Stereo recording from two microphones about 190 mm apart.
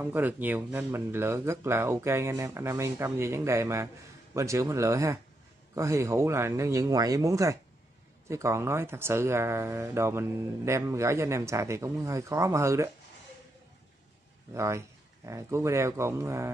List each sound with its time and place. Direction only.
0.0 s speech: 10° right (ahead or behind)
14.5 s speech: 15° right (ahead or behind)